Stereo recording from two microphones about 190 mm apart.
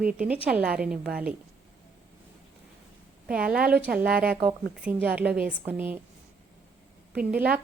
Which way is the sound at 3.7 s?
5° right (ahead or behind).